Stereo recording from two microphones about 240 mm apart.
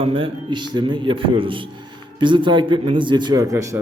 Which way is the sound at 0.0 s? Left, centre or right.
Right.